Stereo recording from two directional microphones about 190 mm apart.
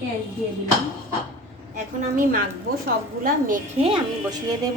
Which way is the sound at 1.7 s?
45° right (ahead or behind).